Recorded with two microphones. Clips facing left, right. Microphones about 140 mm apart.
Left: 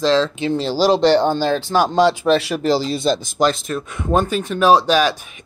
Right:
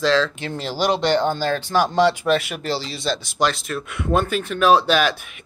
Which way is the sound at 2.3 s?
35° left (ahead or behind).